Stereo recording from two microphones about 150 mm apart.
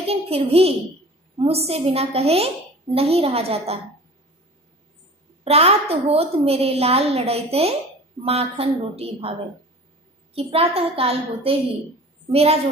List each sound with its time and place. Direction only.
0.0 s a woman's voice: 40° right (ahead or behind)
5.4 s a woman's voice: 40° right (ahead or behind)
10.3 s a woman's voice: 40° right (ahead or behind)